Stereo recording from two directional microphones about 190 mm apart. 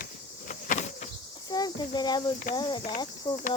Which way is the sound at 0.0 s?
45° left (ahead or behind).